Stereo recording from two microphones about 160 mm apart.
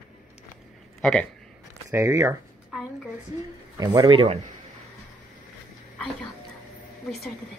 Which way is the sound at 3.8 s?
25° right (ahead or behind).